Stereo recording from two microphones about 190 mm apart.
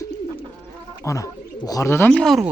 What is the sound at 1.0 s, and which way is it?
Speech, 20° left (ahead or behind).